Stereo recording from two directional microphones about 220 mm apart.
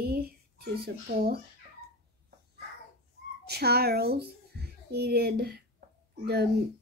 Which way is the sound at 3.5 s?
45° right (ahead or behind).